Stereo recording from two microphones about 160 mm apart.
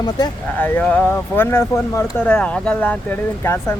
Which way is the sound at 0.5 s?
10° left (ahead or behind).